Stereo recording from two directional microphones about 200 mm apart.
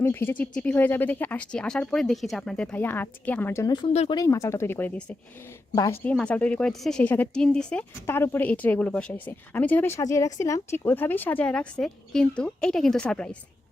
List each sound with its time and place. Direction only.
0.0 s speech: 10° left (ahead or behind); by 4.2 s 30° left (ahead or behind)
4.2 s speech: 15° left (ahead or behind)
5.7 s speech: 20° left (ahead or behind)
6.1 s speech: 5° left (ahead or behind)